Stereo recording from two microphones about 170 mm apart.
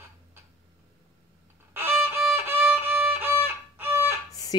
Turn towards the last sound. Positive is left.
turn(degrees=-15)  # may be behind; listen again after turning